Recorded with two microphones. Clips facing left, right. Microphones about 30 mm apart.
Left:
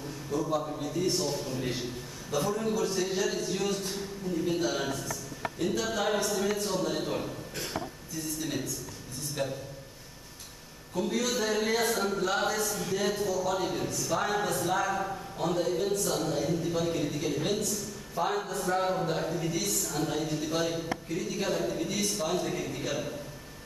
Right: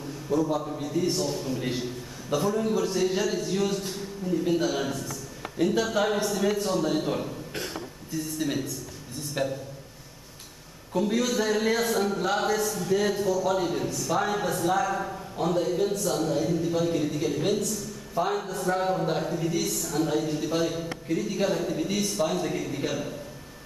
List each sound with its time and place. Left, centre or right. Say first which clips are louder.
0.3 s a man's voice: right 4 dB; centre
5.9 s a man's voice: right 3 dB; centre
9.4 s a man's voice: right 4 dB; right
11.0 s a man's voice: right 4 dB; centre